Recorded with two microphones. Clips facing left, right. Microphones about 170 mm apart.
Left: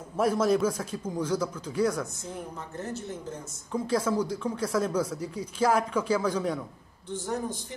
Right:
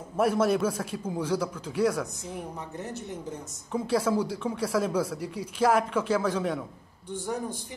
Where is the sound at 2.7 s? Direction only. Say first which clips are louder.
Left 1 dB; 15° right (ahead or behind).